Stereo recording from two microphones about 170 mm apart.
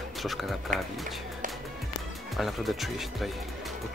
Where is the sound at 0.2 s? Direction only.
Centre (ahead or behind).